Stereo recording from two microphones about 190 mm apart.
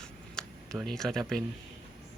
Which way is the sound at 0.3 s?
5° left (ahead or behind).